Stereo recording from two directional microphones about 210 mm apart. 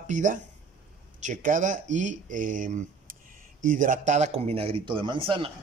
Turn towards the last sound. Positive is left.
turn(degrees=-25)  # may be behind; listen again after turning